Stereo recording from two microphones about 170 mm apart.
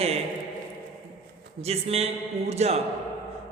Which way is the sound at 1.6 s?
35° right (ahead or behind).